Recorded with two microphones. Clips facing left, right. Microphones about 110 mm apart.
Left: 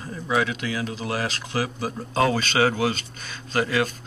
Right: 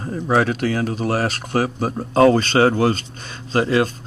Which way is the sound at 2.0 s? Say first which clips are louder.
Right 9 dB; 40° right (ahead or behind).